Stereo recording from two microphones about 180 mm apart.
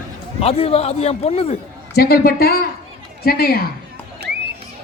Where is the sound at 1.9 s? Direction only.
60° left (ahead or behind).